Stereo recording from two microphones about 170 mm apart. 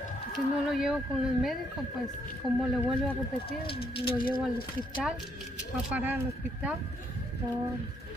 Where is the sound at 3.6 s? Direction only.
30° left (ahead or behind).